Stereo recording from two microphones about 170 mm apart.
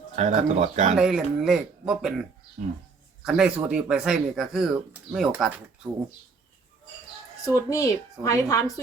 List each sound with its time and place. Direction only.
0.2 s speech: 45° right (ahead or behind)
0.9 s speech: 5° right (ahead or behind)
3.2 s speech: 5° right (ahead or behind)
7.4 s a woman's voice: 20° left (ahead or behind)